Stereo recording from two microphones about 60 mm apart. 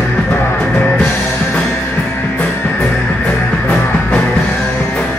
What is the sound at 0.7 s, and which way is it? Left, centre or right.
Music, left.